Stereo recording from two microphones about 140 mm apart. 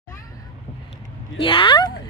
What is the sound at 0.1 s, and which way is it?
Cat, 25° left (ahead or behind).